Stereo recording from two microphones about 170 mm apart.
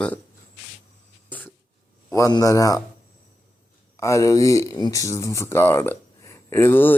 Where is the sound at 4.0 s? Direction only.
20° left (ahead or behind).